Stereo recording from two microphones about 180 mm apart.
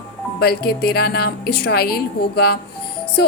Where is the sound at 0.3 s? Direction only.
60° left (ahead or behind).